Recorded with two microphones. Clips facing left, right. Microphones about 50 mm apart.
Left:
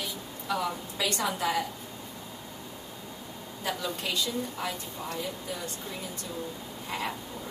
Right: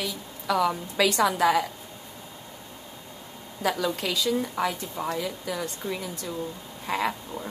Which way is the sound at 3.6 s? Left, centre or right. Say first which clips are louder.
Right 6 dB; right.